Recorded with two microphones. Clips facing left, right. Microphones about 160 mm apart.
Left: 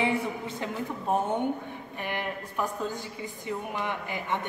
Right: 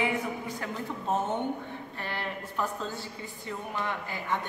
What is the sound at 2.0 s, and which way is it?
Speech, 15° left (ahead or behind).